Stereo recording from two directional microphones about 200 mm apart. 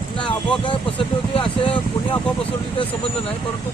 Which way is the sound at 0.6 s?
25° left (ahead or behind).